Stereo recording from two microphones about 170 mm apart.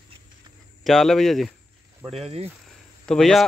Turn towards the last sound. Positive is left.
turn(degrees=0)  # may be behind; listen again after turning